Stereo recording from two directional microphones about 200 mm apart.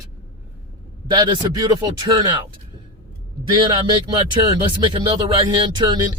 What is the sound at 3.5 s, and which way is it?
Speech, 25° right (ahead or behind).